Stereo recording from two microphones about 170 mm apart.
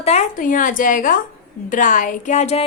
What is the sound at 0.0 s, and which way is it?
A woman's voice, 40° left (ahead or behind).